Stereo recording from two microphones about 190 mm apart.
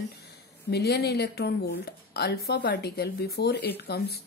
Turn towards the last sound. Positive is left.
turn(degrees=55)  # may be behind; listen again after turning